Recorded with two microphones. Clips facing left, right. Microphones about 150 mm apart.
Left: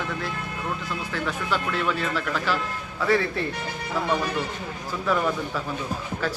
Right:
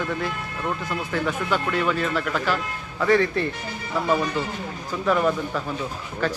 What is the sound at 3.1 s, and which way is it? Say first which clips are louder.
Speech: right 3 dB; 5° left (ahead or behind).